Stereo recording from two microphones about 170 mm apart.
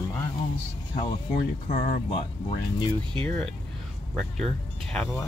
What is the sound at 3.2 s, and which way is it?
Speech, 5° left (ahead or behind).